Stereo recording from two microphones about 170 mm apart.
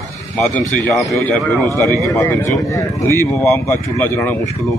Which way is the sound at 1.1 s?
10° left (ahead or behind).